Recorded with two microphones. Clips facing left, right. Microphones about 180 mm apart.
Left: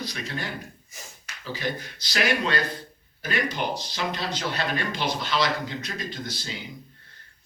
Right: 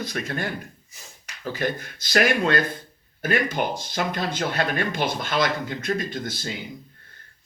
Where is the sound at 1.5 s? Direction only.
50° right (ahead or behind).